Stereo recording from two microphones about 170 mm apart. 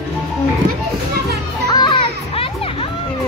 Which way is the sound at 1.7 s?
25° left (ahead or behind).